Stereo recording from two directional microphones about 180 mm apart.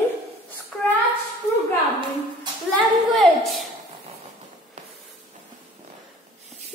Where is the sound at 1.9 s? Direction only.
25° right (ahead or behind).